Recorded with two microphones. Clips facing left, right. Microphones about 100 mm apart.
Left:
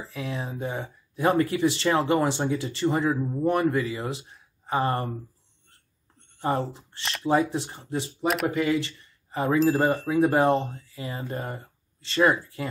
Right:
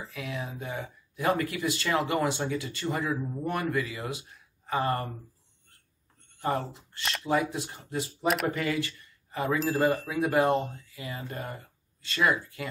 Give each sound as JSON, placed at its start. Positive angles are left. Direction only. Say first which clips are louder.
{"t": 0.1, "sound": "speech", "louder": "left 5 dB", "side_deg": 30}
{"t": 6.1, "sound": "a sound", "louder": "left 3 dB", "side_deg": 30}
{"t": 7.0, "sound": "speech", "louder": "right 1 dB", "side_deg": 0}
{"t": 7.2, "sound": "speech", "louder": "left 5 dB", "side_deg": 30}